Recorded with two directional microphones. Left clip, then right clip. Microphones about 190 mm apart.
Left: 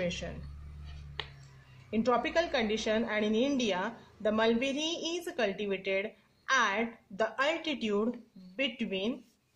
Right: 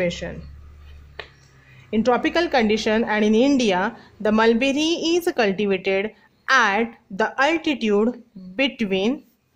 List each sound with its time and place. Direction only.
0.0 s speech: 35° right (ahead or behind)
1.9 s a woman's voice: 35° right (ahead or behind)